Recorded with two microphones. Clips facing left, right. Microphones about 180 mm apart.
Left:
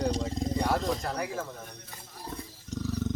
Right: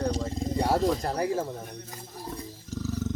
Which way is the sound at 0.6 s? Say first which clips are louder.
Right 6 dB; 35° right (ahead or behind).